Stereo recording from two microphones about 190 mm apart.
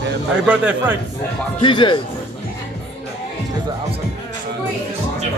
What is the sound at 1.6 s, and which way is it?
Speech, 25° left (ahead or behind).